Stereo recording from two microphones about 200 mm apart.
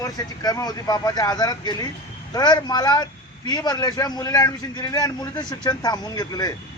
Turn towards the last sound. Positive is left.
turn(degrees=20)  # may be behind; listen again after turning